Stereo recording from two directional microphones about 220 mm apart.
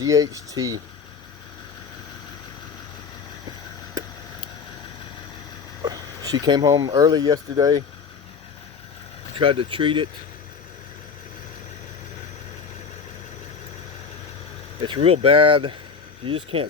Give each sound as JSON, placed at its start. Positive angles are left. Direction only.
{"t": 0.0, "sound": "speech", "side_deg": -15}
{"t": 4.0, "sound": "a sound", "side_deg": -20}
{"t": 5.8, "sound": "speech", "side_deg": -15}
{"t": 9.4, "sound": "speech", "side_deg": -20}
{"t": 14.8, "sound": "speech", "side_deg": -20}